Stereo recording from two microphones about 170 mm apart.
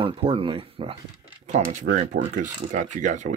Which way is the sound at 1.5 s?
45° right (ahead or behind).